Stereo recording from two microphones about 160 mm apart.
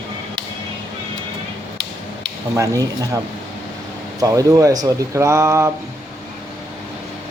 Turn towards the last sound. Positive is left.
turn(degrees=-15)  # may be behind; listen again after turning